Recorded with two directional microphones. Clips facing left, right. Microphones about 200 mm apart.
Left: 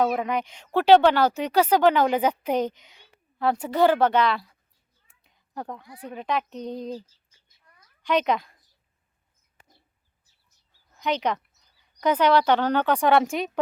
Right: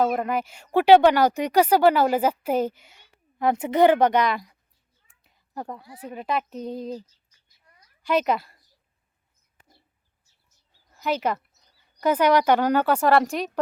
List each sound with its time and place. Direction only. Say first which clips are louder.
0.0 s speech: right 1 dB; centre (ahead or behind)
3.3 s speech: right 2 dB; 20° right (ahead or behind)
5.2 s a sound: right 1 dB; 5° right (ahead or behind)
6.0 s speech: even; 5° right (ahead or behind)
7.0 s a sound: right 3 dB; 30° left (ahead or behind)
8.0 s a woman's voice: right 1 dB; 5° right (ahead or behind)
10.9 s speech: right 1 dB; 5° right (ahead or behind)